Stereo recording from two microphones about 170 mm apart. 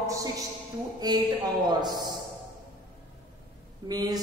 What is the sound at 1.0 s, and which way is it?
A man's voice, 25° right (ahead or behind).